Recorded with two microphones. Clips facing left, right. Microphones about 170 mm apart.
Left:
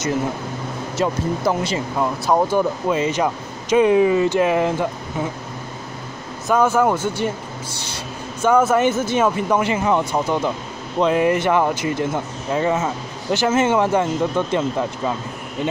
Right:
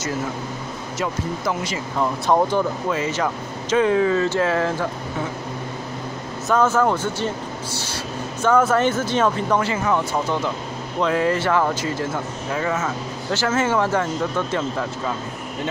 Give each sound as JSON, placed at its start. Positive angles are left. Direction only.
{"t": 0.9, "sound": "speech", "side_deg": 30}
{"t": 2.0, "sound": "speech", "side_deg": 0}
{"t": 2.5, "sound": "speech", "side_deg": 20}
{"t": 6.4, "sound": "speech", "side_deg": 10}
{"t": 7.9, "sound": "vehicle", "side_deg": 10}
{"t": 9.1, "sound": "speech", "side_deg": 10}
{"t": 12.5, "sound": "speech", "side_deg": 25}